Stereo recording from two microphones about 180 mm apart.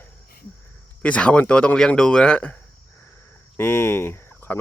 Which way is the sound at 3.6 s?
10° left (ahead or behind).